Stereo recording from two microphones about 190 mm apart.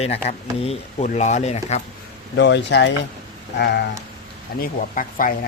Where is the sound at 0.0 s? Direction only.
35° left (ahead or behind).